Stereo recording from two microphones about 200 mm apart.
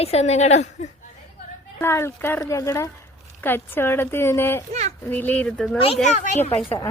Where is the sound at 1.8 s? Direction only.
15° left (ahead or behind).